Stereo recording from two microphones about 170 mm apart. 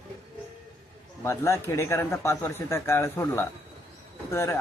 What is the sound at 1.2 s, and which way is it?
Speech, 15° left (ahead or behind).